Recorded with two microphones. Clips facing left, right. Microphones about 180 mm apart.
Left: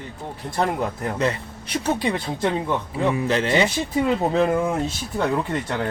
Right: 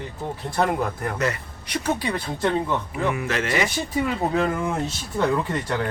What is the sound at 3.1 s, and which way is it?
Speech, 30° left (ahead or behind).